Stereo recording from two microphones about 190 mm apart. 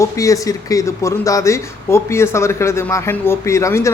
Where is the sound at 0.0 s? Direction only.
15° left (ahead or behind).